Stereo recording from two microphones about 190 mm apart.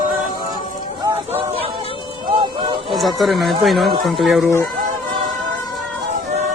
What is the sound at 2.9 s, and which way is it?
Speech, centre (ahead or behind).